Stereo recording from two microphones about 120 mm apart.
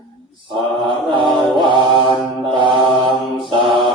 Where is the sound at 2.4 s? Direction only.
40° right (ahead or behind).